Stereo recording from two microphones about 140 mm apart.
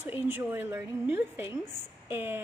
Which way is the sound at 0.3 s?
15° right (ahead or behind).